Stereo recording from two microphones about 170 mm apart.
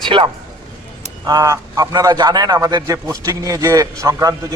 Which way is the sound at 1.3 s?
20° right (ahead or behind).